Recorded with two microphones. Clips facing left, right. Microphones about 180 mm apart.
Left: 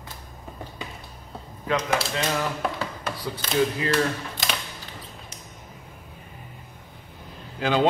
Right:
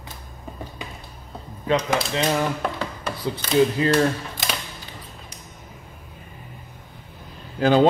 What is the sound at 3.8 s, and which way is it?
Speech, 30° right (ahead or behind).